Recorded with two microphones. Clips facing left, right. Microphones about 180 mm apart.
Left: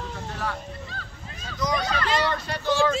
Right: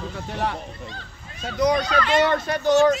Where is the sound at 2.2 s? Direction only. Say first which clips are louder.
Right 6 dB; 50° right (ahead or behind).